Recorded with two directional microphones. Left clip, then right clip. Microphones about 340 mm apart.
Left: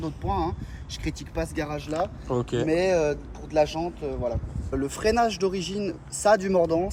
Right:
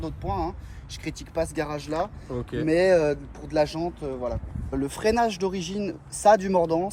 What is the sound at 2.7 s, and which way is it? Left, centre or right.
Speech, right.